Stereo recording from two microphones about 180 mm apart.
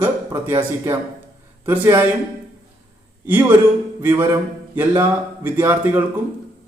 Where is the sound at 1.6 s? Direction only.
10° right (ahead or behind).